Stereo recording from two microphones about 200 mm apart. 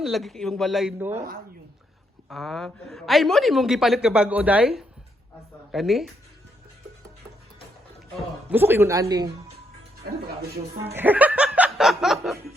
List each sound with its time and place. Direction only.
0.0 s a woman's voice: centre (ahead or behind)
2.3 s a woman's voice: centre (ahead or behind)
8.4 s speech: 10° right (ahead or behind)
10.9 s speech: 10° right (ahead or behind)